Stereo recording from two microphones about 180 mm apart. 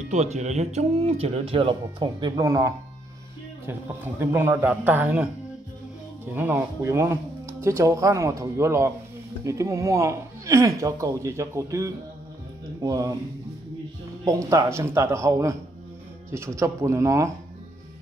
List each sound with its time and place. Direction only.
0.1 s speech: 40° right (ahead or behind); by 5.3 s 10° right (ahead or behind)
6.3 s speech: 10° right (ahead or behind)
14.2 s speech: 20° right (ahead or behind)